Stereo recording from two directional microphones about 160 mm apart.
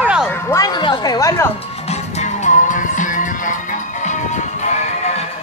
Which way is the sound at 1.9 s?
45° left (ahead or behind).